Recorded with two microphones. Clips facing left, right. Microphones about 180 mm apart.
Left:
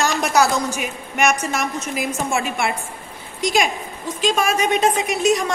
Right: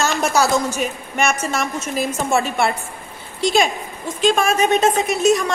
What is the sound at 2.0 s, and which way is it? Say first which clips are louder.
Speech: right 4 dB; 35° right (ahead or behind).